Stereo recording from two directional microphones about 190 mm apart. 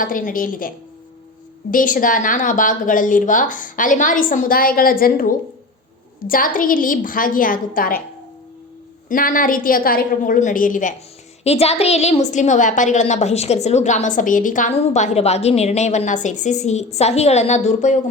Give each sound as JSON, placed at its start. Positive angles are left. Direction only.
{"t": 0.0, "sound": "a woman's voice", "side_deg": 45}
{"t": 1.7, "sound": "a woman's voice", "side_deg": 45}
{"t": 9.0, "sound": "a woman's voice", "side_deg": 45}
{"t": 11.4, "sound": "a woman's voice", "side_deg": 35}